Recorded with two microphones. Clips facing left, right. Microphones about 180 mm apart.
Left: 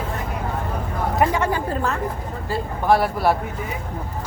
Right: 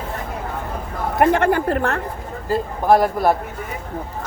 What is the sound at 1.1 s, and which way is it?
Speech, 60° right (ahead or behind).